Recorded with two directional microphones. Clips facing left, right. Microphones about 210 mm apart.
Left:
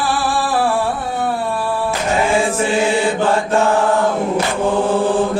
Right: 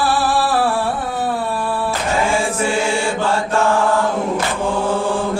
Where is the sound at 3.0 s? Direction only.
20° left (ahead or behind).